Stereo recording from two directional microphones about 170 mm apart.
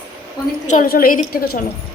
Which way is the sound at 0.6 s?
50° left (ahead or behind).